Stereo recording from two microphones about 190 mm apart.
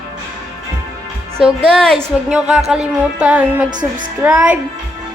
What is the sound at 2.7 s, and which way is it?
Music, 5° right (ahead or behind).